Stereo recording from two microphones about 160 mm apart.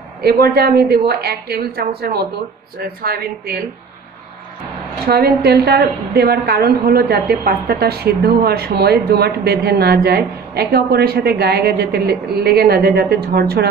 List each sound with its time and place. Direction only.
0.2 s a woman's voice: 80° right
5.0 s a woman's voice: 80° right